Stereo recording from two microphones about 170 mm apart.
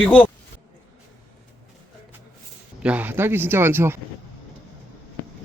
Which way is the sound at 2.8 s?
10° right (ahead or behind).